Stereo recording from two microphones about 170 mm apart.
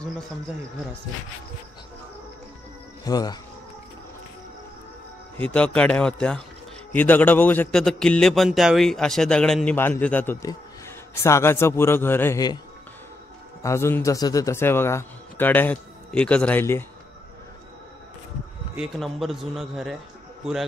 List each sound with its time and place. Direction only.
3.0 s speech: 20° left (ahead or behind)
5.4 s a man's voice: 5° left (ahead or behind)
13.6 s a man's voice: 15° left (ahead or behind)
18.8 s a man's voice: centre (ahead or behind)